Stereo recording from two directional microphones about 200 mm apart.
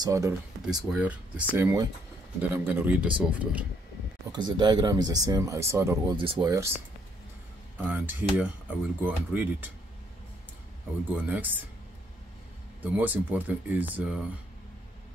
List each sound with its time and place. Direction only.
0.0 s speech: 15° right (ahead or behind)
0.7 s speech: centre (ahead or behind)
4.3 s speech: 20° right (ahead or behind)
6.1 s speech: 25° right (ahead or behind)
7.7 s speech: 10° right (ahead or behind)
11.2 s speech: 10° right (ahead or behind)
12.8 s speech: 10° right (ahead or behind)